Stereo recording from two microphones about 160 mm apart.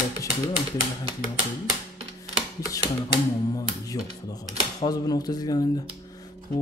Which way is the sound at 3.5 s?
20° left (ahead or behind).